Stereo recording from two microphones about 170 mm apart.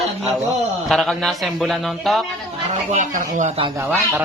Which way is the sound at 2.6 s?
45° right (ahead or behind).